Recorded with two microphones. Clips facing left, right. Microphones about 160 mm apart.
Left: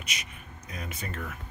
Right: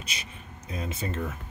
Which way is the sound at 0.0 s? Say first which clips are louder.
Right 1 dB; 30° right (ahead or behind).